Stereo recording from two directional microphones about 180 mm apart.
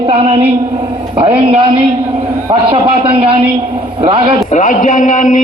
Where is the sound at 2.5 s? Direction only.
30° right (ahead or behind).